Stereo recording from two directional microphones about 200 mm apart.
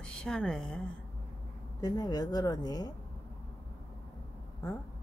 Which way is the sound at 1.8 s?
20° left (ahead or behind).